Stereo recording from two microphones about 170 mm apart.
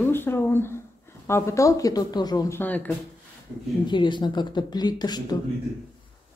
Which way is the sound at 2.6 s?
10° left (ahead or behind).